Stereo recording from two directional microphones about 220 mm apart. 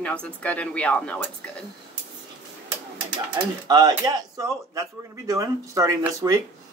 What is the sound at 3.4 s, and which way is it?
Speech, 15° right (ahead or behind).